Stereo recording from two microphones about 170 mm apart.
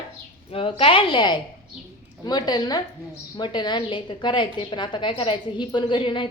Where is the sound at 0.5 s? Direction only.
30° left (ahead or behind).